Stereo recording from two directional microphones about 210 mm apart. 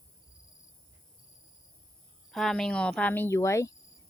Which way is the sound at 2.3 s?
Centre (ahead or behind).